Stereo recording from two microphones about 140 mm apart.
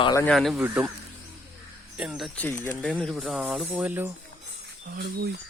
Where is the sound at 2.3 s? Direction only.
10° left (ahead or behind); by 4.1 s 10° right (ahead or behind).